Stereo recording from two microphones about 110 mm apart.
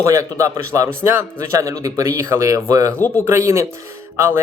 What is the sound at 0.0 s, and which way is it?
Speech, 30° right (ahead or behind).